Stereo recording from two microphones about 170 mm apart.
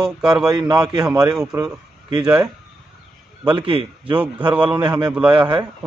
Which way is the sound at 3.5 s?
30° right (ahead or behind).